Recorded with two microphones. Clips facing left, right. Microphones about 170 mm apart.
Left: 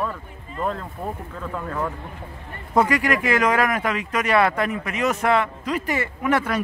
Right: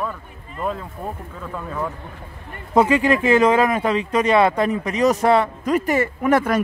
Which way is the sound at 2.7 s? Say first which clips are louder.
Right 4 dB; 25° right (ahead or behind).